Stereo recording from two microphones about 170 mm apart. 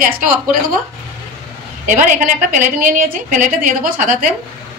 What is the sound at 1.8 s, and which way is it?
A woman's voice, 50° right (ahead or behind).